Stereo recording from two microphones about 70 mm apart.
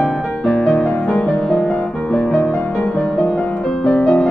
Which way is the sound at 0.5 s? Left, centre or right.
Centre.